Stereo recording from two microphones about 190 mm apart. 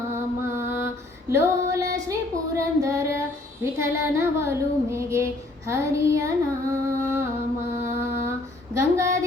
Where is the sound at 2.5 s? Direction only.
15° right (ahead or behind).